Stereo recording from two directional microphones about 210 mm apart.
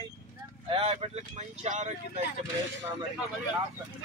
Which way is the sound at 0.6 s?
25° right (ahead or behind).